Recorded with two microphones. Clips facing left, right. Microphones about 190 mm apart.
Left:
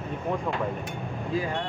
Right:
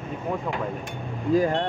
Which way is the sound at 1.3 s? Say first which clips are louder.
Right 8 dB; 45° right (ahead or behind).